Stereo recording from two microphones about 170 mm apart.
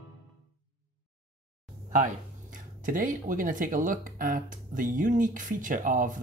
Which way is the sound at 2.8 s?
50° right (ahead or behind).